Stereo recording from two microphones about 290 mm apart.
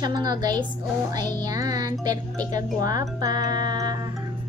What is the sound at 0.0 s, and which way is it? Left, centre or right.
Speech, centre.